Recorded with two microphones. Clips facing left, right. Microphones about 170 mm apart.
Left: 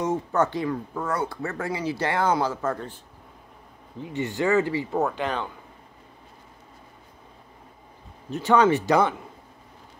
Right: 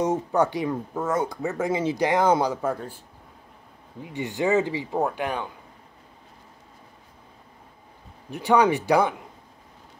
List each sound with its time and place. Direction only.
0.0 s speech: 15° right (ahead or behind)
4.1 s speech: 15° right (ahead or behind)
8.3 s speech: 15° right (ahead or behind)